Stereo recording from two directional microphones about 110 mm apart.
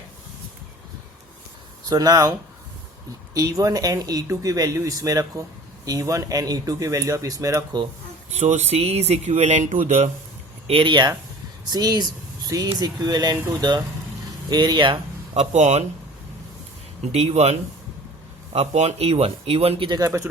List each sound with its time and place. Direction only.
1.9 s speech: 35° right (ahead or behind)
3.3 s speech: 35° right (ahead or behind)
8.4 s speech: 90° right
10.7 s speech: 50° right (ahead or behind)
15.4 s speech: 90° right
17.1 s speech: 70° right (ahead or behind)
18.5 s speech: 70° right (ahead or behind)
20.1 s speech: 25° right (ahead or behind)